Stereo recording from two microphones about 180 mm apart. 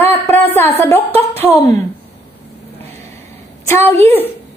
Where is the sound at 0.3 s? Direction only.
10° left (ahead or behind).